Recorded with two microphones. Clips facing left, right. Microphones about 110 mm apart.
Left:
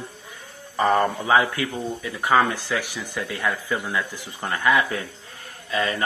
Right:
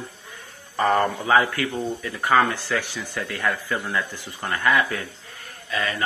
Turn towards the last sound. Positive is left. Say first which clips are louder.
# left 2 dB
turn(degrees=25)  # may be behind; listen again after turning